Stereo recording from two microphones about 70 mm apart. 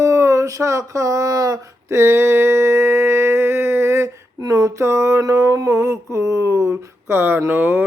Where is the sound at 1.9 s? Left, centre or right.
Right.